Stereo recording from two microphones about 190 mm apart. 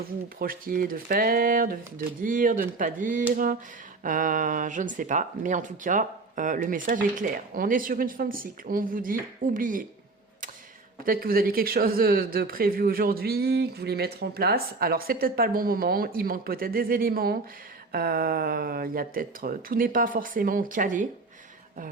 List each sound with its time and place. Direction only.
0.3 s speech: 50° right (ahead or behind)
11.0 s speech: 50° right (ahead or behind)